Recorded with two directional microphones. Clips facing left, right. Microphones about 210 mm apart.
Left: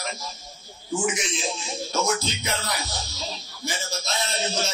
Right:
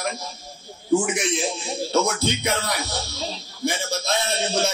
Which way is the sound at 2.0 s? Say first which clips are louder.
Right 3 dB; 60° right (ahead or behind).